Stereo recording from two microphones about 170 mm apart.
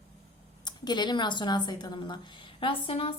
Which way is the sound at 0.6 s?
25° left (ahead or behind).